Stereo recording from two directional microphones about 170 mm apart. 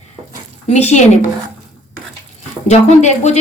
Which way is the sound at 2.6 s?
40° left (ahead or behind).